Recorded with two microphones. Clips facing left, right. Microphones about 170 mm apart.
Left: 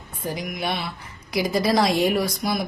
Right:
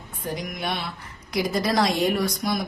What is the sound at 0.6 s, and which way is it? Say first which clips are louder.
A woman's voice: left 2 dB; centre (ahead or behind).